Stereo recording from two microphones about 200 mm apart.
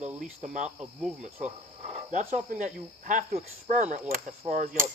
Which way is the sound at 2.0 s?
40° right (ahead or behind).